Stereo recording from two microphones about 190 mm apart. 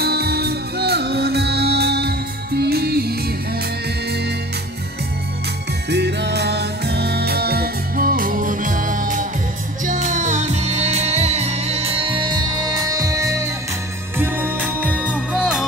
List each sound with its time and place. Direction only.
0.0 s music: 55° right (ahead or behind)
5.9 s music: 65° right (ahead or behind); by 15.6 s 5° right (ahead or behind)